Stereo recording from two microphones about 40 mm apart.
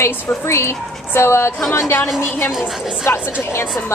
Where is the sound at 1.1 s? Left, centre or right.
Left.